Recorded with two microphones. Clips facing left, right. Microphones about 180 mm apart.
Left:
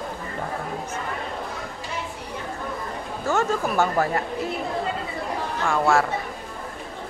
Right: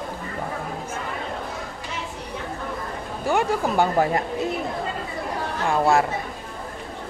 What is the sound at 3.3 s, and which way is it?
Speech, 15° right (ahead or behind).